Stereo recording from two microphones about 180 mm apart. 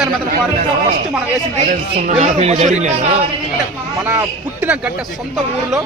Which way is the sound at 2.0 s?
40° right (ahead or behind).